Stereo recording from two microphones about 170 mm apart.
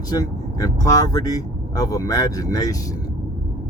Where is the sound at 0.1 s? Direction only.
20° left (ahead or behind).